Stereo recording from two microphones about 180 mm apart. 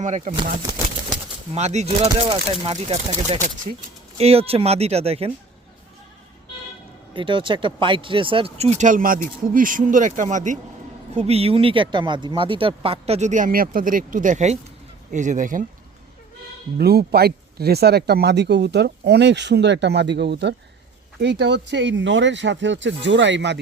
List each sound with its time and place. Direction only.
0.0 s speech: 45° right (ahead or behind)
1.5 s speech: 40° right (ahead or behind)
7.1 s speech: 30° right (ahead or behind); by 15.6 s 45° right (ahead or behind)
16.7 s speech: 60° right (ahead or behind); by 23.6 s 80° right